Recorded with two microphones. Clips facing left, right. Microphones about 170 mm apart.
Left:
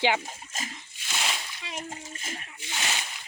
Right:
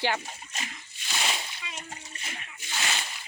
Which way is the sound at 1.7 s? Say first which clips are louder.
Left 5 dB; 50° left (ahead or behind).